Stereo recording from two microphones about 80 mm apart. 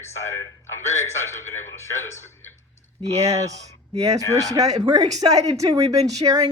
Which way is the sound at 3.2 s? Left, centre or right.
Right.